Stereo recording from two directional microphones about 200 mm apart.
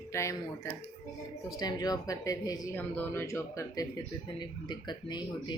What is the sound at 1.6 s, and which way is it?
Speech, 20° left (ahead or behind).